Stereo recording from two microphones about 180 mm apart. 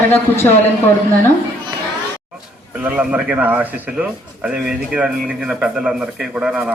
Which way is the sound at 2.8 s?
5° right (ahead or behind).